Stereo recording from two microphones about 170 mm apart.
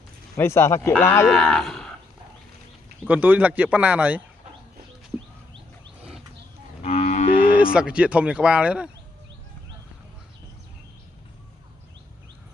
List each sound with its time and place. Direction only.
0.4 s speech: 15° left (ahead or behind)
1.3 s speech: centre (ahead or behind)
3.1 s speech: 10° right (ahead or behind)
6.8 s moo: 40° left (ahead or behind)
7.7 s speech: 5° right (ahead or behind)